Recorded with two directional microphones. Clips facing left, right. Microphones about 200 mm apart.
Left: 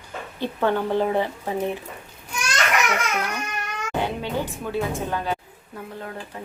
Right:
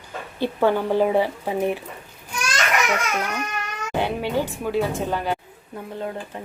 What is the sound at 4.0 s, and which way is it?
Music, 10° right (ahead or behind).